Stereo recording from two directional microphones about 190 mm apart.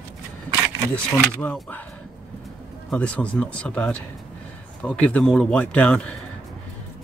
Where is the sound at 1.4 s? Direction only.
10° left (ahead or behind).